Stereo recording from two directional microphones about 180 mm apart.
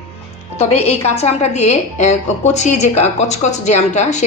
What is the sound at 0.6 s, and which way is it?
A woman's voice, 35° left (ahead or behind).